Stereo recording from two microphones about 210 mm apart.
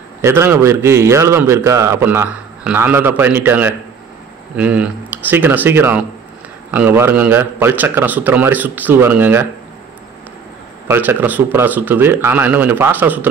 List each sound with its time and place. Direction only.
0.2 s a man's voice: 10° right (ahead or behind)
10.9 s a man's voice: 10° right (ahead or behind)